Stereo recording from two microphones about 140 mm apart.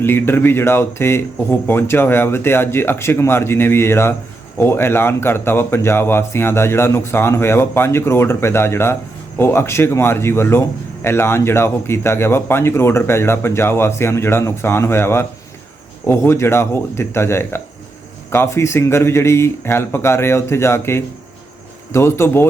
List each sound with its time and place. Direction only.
0.0 s speech: 15° left (ahead or behind)